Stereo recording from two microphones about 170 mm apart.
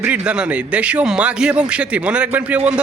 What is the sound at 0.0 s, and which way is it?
A man's voice, 5° right (ahead or behind).